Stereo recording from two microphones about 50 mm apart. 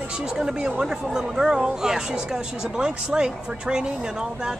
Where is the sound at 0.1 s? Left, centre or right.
Centre.